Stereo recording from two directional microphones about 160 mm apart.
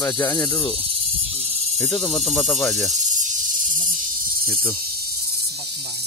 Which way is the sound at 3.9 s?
60° right (ahead or behind).